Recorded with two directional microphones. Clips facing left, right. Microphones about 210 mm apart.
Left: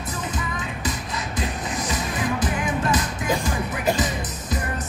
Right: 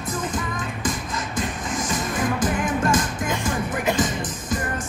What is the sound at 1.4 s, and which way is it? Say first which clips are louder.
Music: right 1 dB; 45° right (ahead or behind).